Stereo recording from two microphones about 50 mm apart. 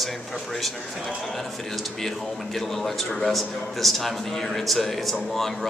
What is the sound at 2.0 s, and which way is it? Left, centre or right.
A man's voice, centre.